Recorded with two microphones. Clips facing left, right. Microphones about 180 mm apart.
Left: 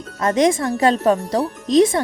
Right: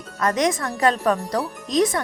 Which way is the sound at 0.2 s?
25° left (ahead or behind).